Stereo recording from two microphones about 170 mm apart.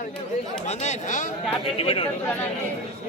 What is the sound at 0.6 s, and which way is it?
Speech, 45° left (ahead or behind).